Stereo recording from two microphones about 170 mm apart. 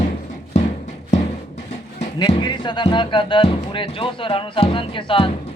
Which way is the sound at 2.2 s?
25° left (ahead or behind).